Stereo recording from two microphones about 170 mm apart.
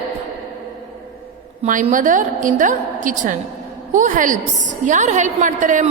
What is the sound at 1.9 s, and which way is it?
A woman's voice, 50° right (ahead or behind).